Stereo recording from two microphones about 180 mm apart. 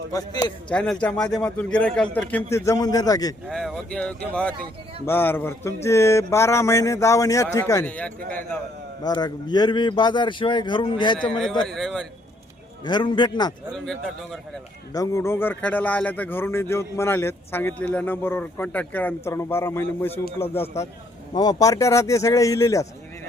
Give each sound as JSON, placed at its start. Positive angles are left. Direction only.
{"t": 0.1, "sound": "speech", "side_deg": 20}
{"t": 0.7, "sound": "speech", "side_deg": 5}
{"t": 3.5, "sound": "speech", "side_deg": 0}
{"t": 9.0, "sound": "speech", "side_deg": 25}
{"t": 11.2, "sound": "speech", "side_deg": 5}
{"t": 12.8, "sound": "speech", "side_deg": 25}
{"t": 13.7, "sound": "speech", "side_deg": 5}
{"t": 14.9, "sound": "speech", "side_deg": 15}